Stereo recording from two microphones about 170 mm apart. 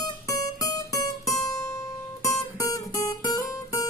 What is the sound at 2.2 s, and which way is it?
Guitar, 20° left (ahead or behind).